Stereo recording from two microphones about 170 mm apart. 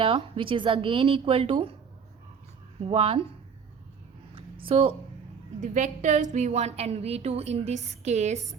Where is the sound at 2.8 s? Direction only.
35° right (ahead or behind).